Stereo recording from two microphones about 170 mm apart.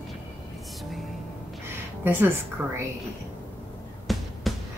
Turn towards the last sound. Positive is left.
turn(degrees=0)  # may be behind; listen again after turning